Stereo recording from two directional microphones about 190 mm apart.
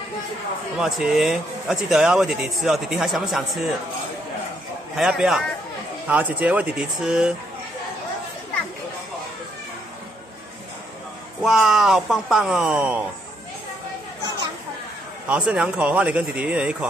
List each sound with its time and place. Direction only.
0.7 s speech: 5° right (ahead or behind)
4.9 s speech: 5° right (ahead or behind)
11.4 s speech: centre (ahead or behind)
15.2 s speech: 5° right (ahead or behind)